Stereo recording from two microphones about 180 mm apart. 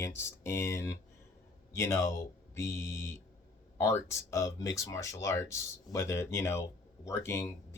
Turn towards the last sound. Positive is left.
turn(degrees=15)  # may be behind; listen again after turning